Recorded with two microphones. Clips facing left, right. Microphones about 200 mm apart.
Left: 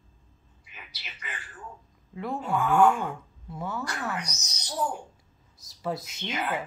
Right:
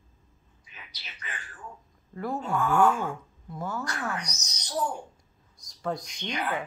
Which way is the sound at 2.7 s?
20° left (ahead or behind).